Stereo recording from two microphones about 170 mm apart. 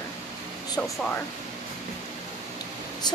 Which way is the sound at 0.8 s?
10° left (ahead or behind).